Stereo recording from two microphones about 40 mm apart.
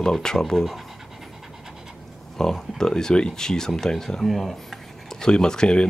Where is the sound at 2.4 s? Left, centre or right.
Centre.